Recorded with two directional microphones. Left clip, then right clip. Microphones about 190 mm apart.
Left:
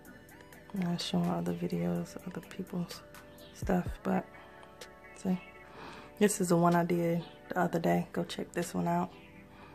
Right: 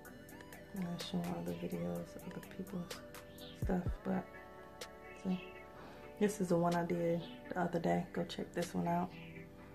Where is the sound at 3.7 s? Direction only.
40° left (ahead or behind).